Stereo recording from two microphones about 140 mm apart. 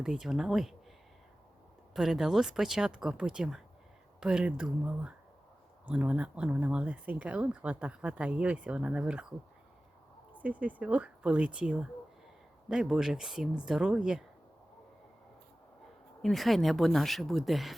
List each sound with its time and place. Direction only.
0.0 s speech: 5° right (ahead or behind)
1.9 s speech: 5° right (ahead or behind)
10.3 s speech: 10° right (ahead or behind)
16.2 s speech: centre (ahead or behind)